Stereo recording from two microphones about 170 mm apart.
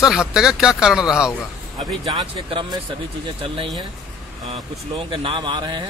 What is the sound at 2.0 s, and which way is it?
Speech, 25° right (ahead or behind).